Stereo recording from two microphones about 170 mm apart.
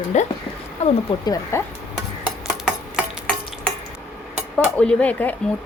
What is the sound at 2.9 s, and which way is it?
Stir, 5° left (ahead or behind).